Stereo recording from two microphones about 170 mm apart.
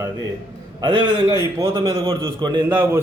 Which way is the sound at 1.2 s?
20° right (ahead or behind).